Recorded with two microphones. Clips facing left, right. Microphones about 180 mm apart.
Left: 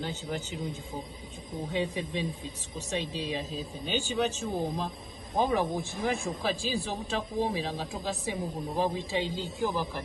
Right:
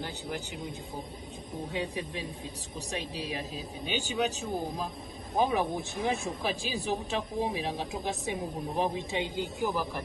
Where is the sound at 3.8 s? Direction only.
15° right (ahead or behind).